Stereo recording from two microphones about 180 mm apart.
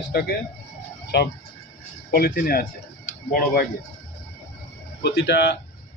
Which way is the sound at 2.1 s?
55° left (ahead or behind).